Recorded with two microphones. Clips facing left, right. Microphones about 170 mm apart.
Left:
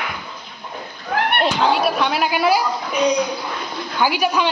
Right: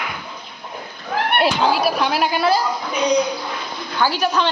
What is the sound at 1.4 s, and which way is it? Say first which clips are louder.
Speech: right 1 dB; centre (ahead or behind).